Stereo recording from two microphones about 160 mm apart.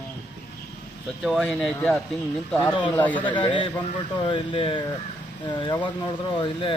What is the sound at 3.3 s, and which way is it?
Speech, 30° left (ahead or behind).